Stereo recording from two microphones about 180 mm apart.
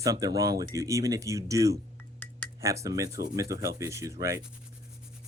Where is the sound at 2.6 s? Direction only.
15° right (ahead or behind).